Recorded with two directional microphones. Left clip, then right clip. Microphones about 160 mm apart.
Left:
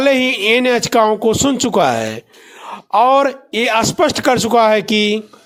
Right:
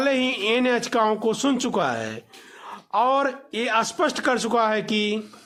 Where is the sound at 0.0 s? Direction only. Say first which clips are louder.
Left 9 dB; 35° left (ahead or behind).